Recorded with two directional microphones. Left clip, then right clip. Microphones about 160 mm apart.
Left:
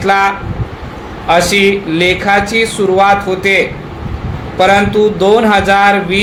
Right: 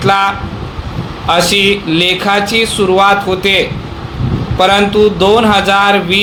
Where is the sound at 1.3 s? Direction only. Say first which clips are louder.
Left 1 dB; 30° right (ahead or behind).